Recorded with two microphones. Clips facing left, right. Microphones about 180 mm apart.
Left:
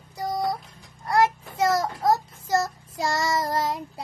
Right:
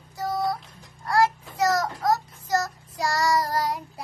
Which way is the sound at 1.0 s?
20° left (ahead or behind).